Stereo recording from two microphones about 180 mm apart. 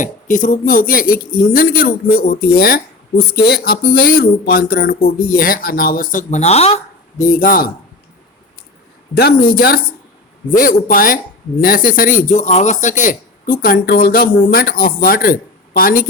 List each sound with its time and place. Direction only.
0.0 s speech: 45° left (ahead or behind)
7.3 s speech: 50° left (ahead or behind)
9.1 s speech: 60° left (ahead or behind)